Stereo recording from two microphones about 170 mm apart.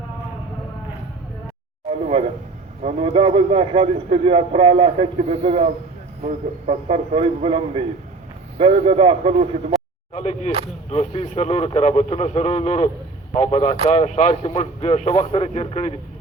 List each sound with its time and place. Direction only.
2.8 s a man's voice: 35° right (ahead or behind)
10.2 s a man's voice: 40° left (ahead or behind)